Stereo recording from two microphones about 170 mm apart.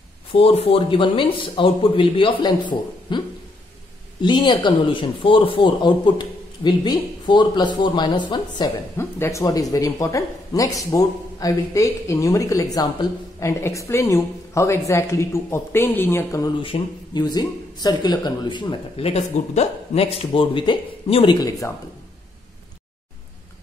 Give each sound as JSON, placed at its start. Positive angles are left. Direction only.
{"t": 0.3, "sound": "speech", "side_deg": 35}
{"t": 4.2, "sound": "a woman's voice", "side_deg": 25}
{"t": 21.4, "sound": "speech", "side_deg": 20}